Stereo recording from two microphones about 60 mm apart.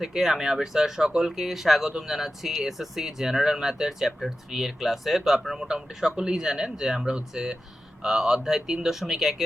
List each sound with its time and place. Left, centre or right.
0.0 s speech: centre